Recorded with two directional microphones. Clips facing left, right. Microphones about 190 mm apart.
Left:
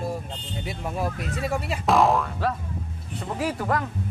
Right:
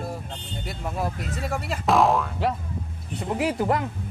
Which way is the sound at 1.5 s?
Centre (ahead or behind).